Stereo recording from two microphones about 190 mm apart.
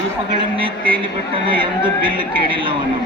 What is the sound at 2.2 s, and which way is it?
Speech, 25° right (ahead or behind).